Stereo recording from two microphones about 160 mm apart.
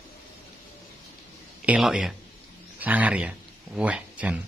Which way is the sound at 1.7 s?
Centre (ahead or behind).